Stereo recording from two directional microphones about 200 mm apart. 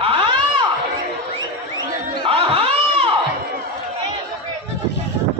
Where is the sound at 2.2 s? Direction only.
30° right (ahead or behind).